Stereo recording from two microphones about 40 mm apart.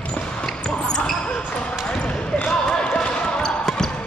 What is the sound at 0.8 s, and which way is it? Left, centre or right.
Basketball bounce, left.